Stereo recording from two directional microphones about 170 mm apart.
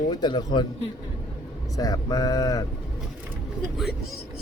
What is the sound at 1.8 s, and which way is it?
Speech, 20° left (ahead or behind).